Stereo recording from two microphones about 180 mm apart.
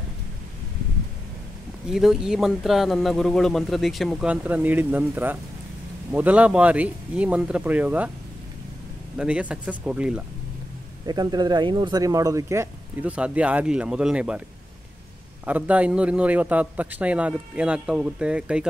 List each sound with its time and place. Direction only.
1.9 s speech: centre (ahead or behind)
9.2 s speech: 5° right (ahead or behind)
11.1 s speech: 25° right (ahead or behind); by 14.4 s 5° right (ahead or behind)
15.4 s speech: 10° right (ahead or behind)